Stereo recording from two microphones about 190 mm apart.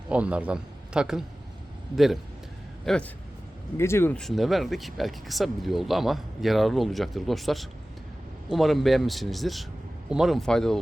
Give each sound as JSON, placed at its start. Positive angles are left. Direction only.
{"t": 0.1, "sound": "a man's voice", "side_deg": -5}
{"t": 2.8, "sound": "speech", "side_deg": 5}